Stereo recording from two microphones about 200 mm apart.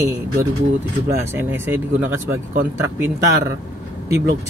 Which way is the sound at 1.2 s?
10° right (ahead or behind).